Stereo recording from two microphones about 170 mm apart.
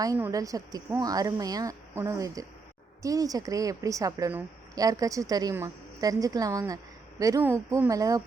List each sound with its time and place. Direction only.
0.0 s a woman's voice: 20° right (ahead or behind)